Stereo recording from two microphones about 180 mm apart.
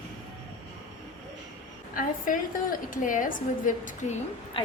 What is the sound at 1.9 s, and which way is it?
A woman's voice, 50° left (ahead or behind).